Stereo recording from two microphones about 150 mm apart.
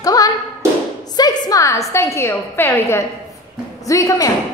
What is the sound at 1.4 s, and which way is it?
A woman's voice, 20° left (ahead or behind).